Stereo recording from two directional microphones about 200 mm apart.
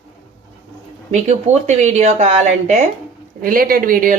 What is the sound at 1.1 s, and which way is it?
A woman's voice, 35° right (ahead or behind).